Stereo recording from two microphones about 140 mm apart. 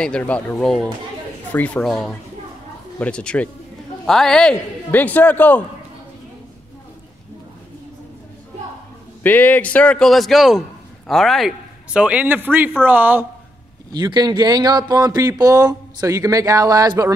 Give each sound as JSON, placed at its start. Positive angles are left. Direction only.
{"t": 0.0, "sound": "a man's voice", "side_deg": 5}
{"t": 9.2, "sound": "a man's voice", "side_deg": 15}
{"t": 13.9, "sound": "speech", "side_deg": -30}